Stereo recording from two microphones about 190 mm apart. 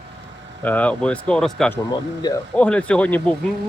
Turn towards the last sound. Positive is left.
turn(degrees=5)  # may be behind; listen again after turning